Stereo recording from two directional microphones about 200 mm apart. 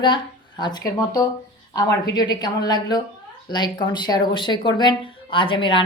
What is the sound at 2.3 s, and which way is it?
Speech, 20° left (ahead or behind).